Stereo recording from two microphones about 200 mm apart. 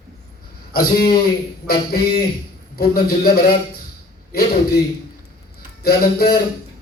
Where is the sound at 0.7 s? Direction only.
50° left (ahead or behind).